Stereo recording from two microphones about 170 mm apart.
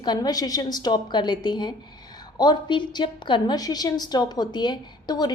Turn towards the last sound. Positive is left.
turn(degrees=25)  # may be behind; listen again after turning